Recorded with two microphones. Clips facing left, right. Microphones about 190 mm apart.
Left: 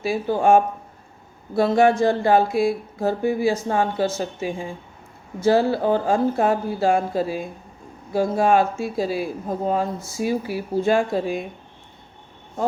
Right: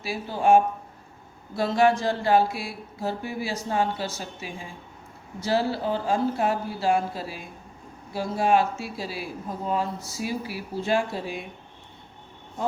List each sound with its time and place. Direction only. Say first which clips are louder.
0.0 s speech: left 5 dB; 50° left (ahead or behind)